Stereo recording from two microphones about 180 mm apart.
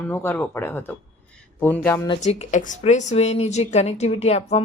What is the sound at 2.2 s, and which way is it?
A woman's voice, 40° left (ahead or behind).